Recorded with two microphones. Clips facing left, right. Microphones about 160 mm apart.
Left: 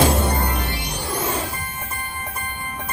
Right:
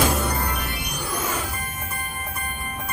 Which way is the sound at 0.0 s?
30° left (ahead or behind).